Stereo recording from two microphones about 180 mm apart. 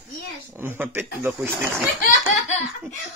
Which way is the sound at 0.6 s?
10° right (ahead or behind).